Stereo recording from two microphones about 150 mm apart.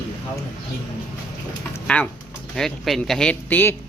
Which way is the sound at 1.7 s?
10° left (ahead or behind).